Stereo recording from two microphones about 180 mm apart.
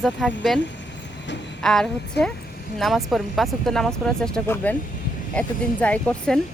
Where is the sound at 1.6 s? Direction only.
Centre (ahead or behind).